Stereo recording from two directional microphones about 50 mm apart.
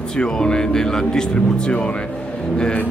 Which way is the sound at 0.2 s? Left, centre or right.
Centre.